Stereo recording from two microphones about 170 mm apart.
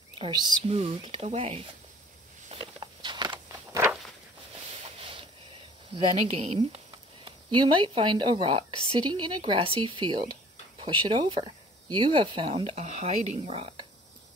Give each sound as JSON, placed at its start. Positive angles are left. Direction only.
{"t": 0.2, "sound": "a woman's voice", "side_deg": -25}
{"t": 2.4, "sound": "walk", "side_deg": -35}
{"t": 6.3, "sound": "a woman's voice", "side_deg": -35}